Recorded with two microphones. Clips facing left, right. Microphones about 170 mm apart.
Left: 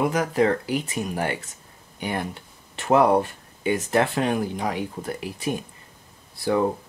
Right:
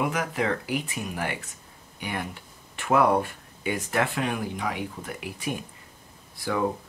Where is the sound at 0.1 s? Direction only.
35° left (ahead or behind).